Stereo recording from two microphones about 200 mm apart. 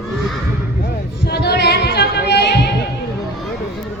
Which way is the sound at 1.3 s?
55° left (ahead or behind).